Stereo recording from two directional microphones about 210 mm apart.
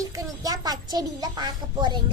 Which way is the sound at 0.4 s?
15° right (ahead or behind).